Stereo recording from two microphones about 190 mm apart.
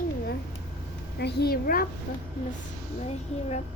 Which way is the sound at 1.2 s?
60° left (ahead or behind).